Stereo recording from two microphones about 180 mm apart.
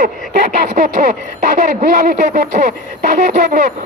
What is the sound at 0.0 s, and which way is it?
Speech, 50° right (ahead or behind).